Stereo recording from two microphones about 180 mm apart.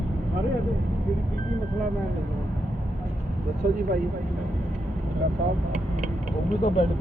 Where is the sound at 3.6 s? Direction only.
50° right (ahead or behind).